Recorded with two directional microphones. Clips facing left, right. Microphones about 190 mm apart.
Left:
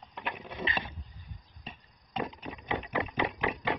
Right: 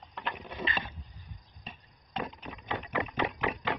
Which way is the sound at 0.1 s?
10° left (ahead or behind).